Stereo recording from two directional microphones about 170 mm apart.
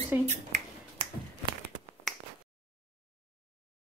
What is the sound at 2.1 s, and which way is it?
Finger snapping, centre (ahead or behind).